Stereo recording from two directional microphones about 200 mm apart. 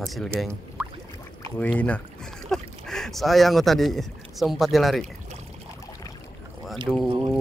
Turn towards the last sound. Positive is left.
turn(degrees=-25)  # may be behind; listen again after turning